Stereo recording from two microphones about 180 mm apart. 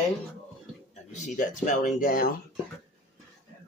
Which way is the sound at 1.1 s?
40° left (ahead or behind).